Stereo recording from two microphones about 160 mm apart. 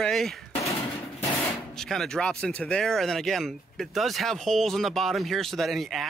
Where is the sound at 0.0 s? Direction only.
Centre (ahead or behind).